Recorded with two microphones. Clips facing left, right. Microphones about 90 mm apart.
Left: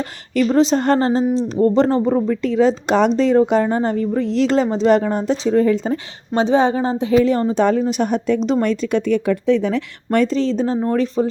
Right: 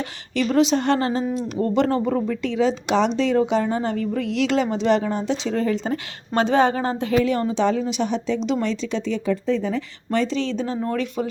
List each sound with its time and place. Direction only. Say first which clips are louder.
0.4 s a woman's voice: left 3 dB; 35° left (ahead or behind)
6.3 s a woman's voice: left 3 dB; 25° left (ahead or behind); by 10.2 s 65° left (ahead or behind)
10.3 s a woman's voice: left 6 dB; 35° left (ahead or behind)